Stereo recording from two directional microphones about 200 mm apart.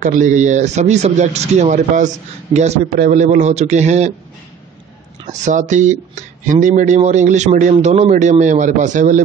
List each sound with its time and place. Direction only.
0.0 s speech: 40° right (ahead or behind)
5.4 s speech: 40° right (ahead or behind)